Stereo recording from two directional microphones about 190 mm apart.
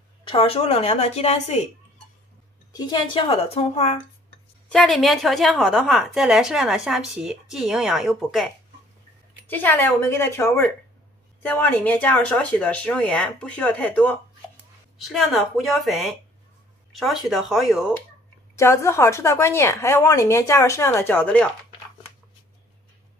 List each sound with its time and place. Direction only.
0.3 s a woman's voice: 30° left (ahead or behind)
2.7 s a woman's voice: 20° left (ahead or behind)
4.6 s a woman's voice: centre (ahead or behind)
9.5 s a woman's voice: 10° left (ahead or behind)
18.6 s speech: 15° left (ahead or behind)